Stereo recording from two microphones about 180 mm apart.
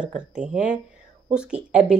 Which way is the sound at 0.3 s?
5° right (ahead or behind).